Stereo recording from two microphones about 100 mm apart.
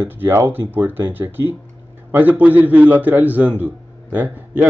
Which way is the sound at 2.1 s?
15° right (ahead or behind).